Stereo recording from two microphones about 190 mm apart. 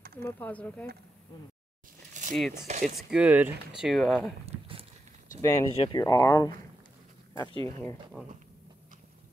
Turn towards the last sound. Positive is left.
turn(degrees=20)  # may be behind; listen again after turning